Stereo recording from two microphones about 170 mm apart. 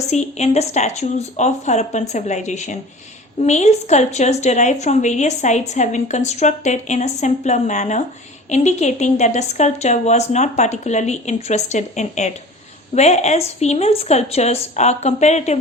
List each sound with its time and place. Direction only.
0.1 s a woman's voice: 40° left (ahead or behind)